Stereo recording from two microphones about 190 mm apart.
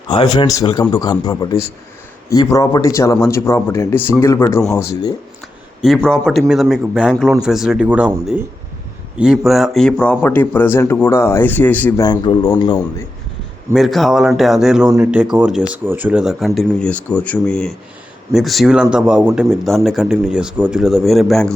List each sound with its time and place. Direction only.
0.1 s a man's voice: 25° left (ahead or behind)
5.8 s a man's voice: centre (ahead or behind)
12.0 s a man's voice: 20° left (ahead or behind)
13.7 s speech: centre (ahead or behind)